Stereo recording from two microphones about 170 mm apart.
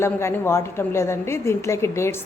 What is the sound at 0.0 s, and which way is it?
A woman's voice, 15° left (ahead or behind).